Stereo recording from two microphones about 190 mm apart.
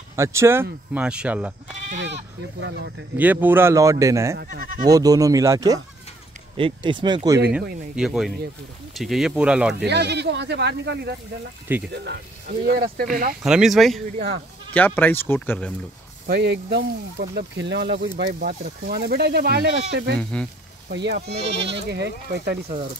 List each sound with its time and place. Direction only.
0.1 s speech: 15° right (ahead or behind)
2.6 s speech: 75° right (ahead or behind)
3.2 s speech: 10° right (ahead or behind)
4.4 s speech: 55° right (ahead or behind)
4.8 s speech: 20° right (ahead or behind)
7.9 s speech: 5° right (ahead or behind)
9.8 s speech: 65° right (ahead or behind); by 13.4 s 50° right (ahead or behind)
13.4 s speech: 5° right (ahead or behind)
16.3 s speech: 60° right (ahead or behind)
18.4 s speech: 50° right (ahead or behind)
20.2 s speech: 5° left (ahead or behind)
20.9 s speech: 65° right (ahead or behind)